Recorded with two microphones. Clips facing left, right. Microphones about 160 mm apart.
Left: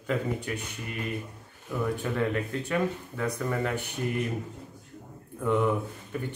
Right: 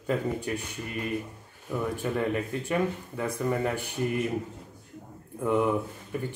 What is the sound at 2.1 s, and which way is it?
Speech, 10° right (ahead or behind).